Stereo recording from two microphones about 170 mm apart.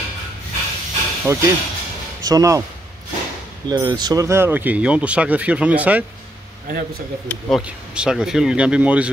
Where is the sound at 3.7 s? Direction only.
25° right (ahead or behind).